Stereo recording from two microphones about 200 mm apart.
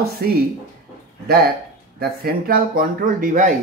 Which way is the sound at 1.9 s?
45° right (ahead or behind).